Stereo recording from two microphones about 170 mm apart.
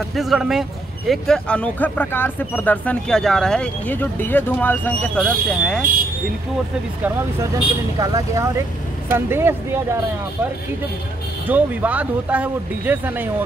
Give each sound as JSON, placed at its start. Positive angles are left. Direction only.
{"t": 0.1, "sound": "speech", "side_deg": 0}
{"t": 7.0, "sound": "speech", "side_deg": -15}
{"t": 11.4, "sound": "speech", "side_deg": -10}